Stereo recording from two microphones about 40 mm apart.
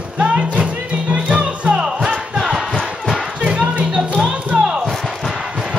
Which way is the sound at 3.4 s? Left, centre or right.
Right.